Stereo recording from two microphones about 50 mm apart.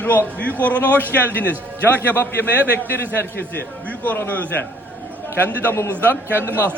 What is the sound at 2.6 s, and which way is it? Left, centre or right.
Speech, right.